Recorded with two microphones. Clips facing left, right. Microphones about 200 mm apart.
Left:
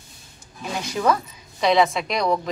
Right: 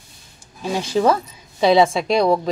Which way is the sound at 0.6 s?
30° right (ahead or behind).